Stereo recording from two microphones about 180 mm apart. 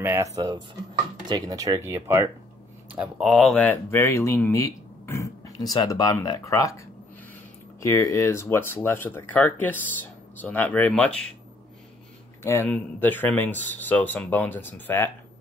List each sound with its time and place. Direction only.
0.0 s speech: 15° right (ahead or behind); by 6.8 s 20° left (ahead or behind)
7.8 s speech: 15° left (ahead or behind)
12.4 s speech: 10° left (ahead or behind)